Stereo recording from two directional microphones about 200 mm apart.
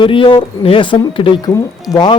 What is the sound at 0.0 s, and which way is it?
Speech, 25° left (ahead or behind).